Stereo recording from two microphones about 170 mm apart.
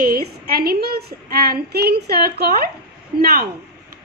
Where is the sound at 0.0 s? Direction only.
60° right (ahead or behind).